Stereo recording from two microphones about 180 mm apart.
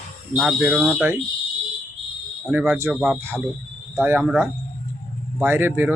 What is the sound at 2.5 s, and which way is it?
Speech, 10° right (ahead or behind).